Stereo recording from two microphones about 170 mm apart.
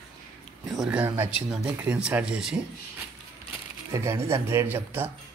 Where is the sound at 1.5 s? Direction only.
5° right (ahead or behind).